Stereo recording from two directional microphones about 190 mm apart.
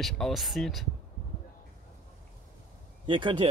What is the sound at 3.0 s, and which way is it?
Speech, 25° right (ahead or behind).